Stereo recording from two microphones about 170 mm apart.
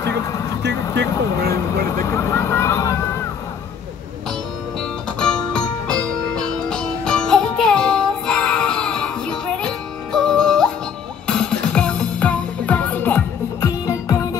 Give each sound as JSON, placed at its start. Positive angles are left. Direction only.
{"t": 0.0, "sound": "music", "side_deg": 20}
{"t": 0.6, "sound": "vehicle", "side_deg": -90}
{"t": 1.5, "sound": "vehicle", "side_deg": 15}
{"t": 5.2, "sound": "music", "side_deg": 5}